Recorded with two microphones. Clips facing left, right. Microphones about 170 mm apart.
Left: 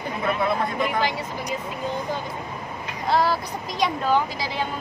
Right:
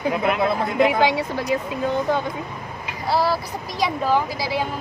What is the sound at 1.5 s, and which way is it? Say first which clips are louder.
Speech: right 7 dB; 75° right (ahead or behind).